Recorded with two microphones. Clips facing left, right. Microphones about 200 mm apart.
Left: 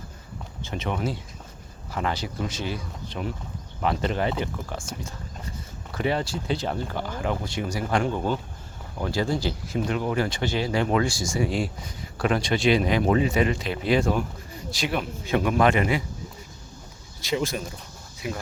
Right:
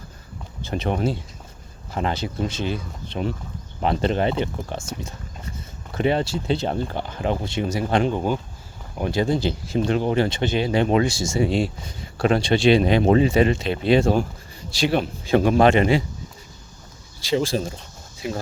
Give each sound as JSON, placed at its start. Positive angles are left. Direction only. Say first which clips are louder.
{"t": 0.6, "sound": "speech", "louder": "right 5 dB", "side_deg": -35}
{"t": 17.2, "sound": "speech", "louder": "right 5 dB", "side_deg": -30}